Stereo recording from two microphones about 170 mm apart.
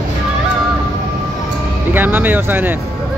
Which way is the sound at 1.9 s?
10° right (ahead or behind).